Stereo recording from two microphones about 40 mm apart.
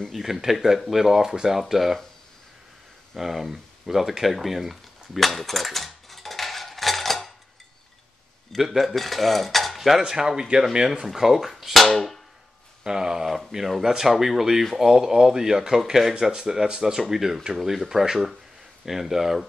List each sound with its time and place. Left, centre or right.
0.1 s speech: centre
3.2 s a sound: centre
8.5 s cutlery: centre
10.7 s speech: centre
11.1 s cutlery: centre
12.8 s speech: centre